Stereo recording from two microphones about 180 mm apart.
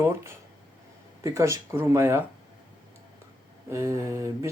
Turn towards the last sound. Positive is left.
turn(degrees=-15)  # may be behind; listen again after turning